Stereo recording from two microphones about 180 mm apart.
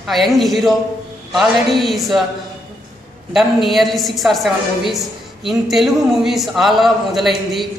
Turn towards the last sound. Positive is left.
turn(degrees=0)  # may be behind; listen again after turning